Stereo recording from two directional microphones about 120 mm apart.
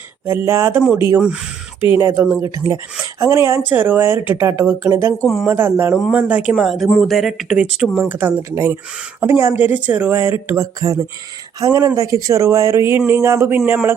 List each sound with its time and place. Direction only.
0.3 s speech: 20° right (ahead or behind)
5.2 s speech: centre (ahead or behind)
5.5 s speech: 15° right (ahead or behind)
6.5 s speech: centre (ahead or behind)
8.0 s speech: 20° right (ahead or behind)